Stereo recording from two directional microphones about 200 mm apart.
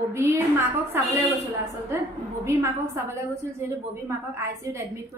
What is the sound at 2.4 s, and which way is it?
A woman's voice, 15° right (ahead or behind).